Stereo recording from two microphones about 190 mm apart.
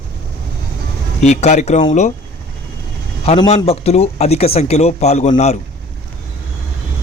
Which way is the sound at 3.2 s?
30° left (ahead or behind).